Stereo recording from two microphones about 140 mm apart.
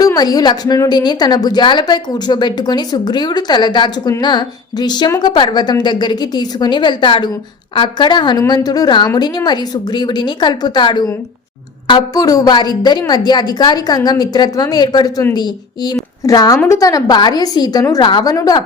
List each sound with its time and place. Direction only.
0.0 s a woman's voice: 25° left (ahead or behind)